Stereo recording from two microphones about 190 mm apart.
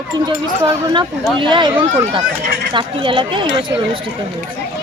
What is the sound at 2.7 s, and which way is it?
Speech, 25° right (ahead or behind).